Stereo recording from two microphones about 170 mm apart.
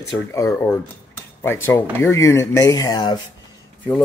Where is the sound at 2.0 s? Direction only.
20° left (ahead or behind).